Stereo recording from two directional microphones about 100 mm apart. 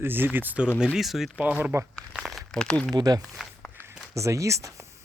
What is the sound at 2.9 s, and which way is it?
Speech, 40° right (ahead or behind).